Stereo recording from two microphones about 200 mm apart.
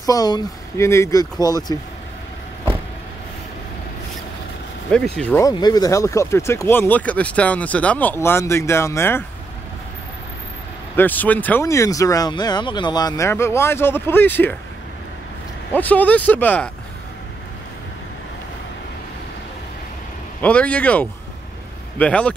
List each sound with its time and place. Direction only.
0.0 s speech: 20° left (ahead or behind)
4.9 s speech: 5° left (ahead or behind)
5.5 s speech: 20° left (ahead or behind)
11.0 s speech: 10° left (ahead or behind)
15.7 s speech: 10° left (ahead or behind)
20.4 s speech: 5° left (ahead or behind)